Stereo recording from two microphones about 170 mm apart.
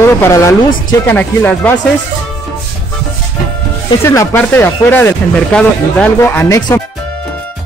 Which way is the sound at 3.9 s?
15° left (ahead or behind).